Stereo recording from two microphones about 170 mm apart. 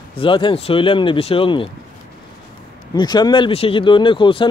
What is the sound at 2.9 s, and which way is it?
Speech, 25° left (ahead or behind).